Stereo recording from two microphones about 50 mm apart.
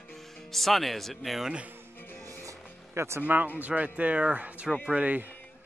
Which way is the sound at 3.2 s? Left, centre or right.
Right.